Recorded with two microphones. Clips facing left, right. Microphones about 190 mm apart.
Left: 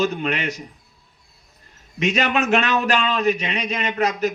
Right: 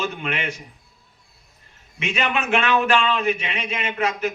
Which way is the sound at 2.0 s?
40° left (ahead or behind).